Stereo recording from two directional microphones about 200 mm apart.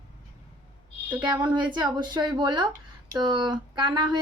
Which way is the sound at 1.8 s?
20° right (ahead or behind).